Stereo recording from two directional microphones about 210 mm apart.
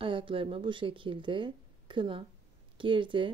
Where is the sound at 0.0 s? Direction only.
25° right (ahead or behind).